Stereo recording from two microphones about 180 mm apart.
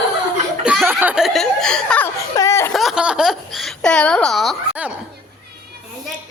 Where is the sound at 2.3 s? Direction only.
15° left (ahead or behind).